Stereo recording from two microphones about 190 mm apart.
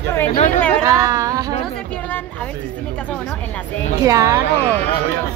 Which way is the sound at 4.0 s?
15° right (ahead or behind).